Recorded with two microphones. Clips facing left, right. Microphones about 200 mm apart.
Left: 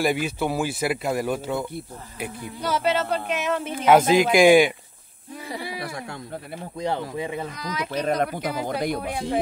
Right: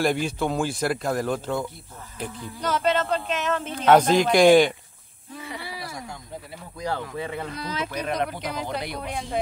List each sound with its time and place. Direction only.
0.0 s speech: 5° left (ahead or behind)
6.8 s speech: 20° left (ahead or behind)
7.5 s speech: 30° right (ahead or behind)
8.1 s speech: 50° left (ahead or behind)